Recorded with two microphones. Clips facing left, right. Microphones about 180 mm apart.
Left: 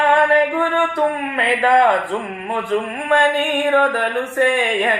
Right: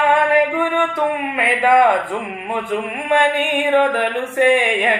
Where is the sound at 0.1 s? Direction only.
15° right (ahead or behind).